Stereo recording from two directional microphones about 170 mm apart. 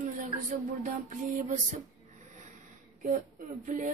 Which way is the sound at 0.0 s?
50° right (ahead or behind).